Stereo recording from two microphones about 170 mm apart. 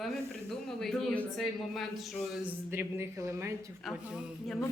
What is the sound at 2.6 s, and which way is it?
Speech, 15° right (ahead or behind).